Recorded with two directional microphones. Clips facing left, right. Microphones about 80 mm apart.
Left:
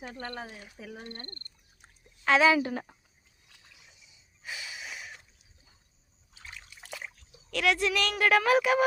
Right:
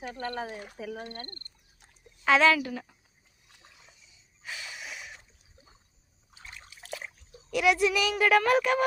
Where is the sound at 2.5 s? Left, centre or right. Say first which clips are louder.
Left 3 dB; left.